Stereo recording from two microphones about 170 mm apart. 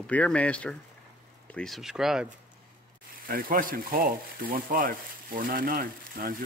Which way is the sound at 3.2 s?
55° right (ahead or behind).